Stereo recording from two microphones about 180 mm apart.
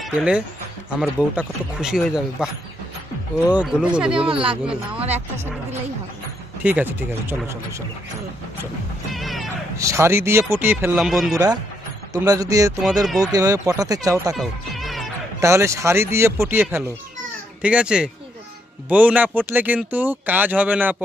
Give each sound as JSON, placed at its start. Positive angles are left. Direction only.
{"t": 0.0, "sound": "speech", "side_deg": -5}
{"t": 4.3, "sound": "speech", "side_deg": -30}
{"t": 6.6, "sound": "speech", "side_deg": -10}
{"t": 9.1, "sound": "music", "side_deg": 0}
{"t": 9.8, "sound": "speech", "side_deg": -15}
{"t": 12.1, "sound": "speech", "side_deg": -20}
{"t": 12.8, "sound": "speech", "side_deg": 0}
{"t": 13.2, "sound": "speech", "side_deg": -20}
{"t": 14.3, "sound": "music", "side_deg": 0}
{"t": 15.4, "sound": "speech", "side_deg": -15}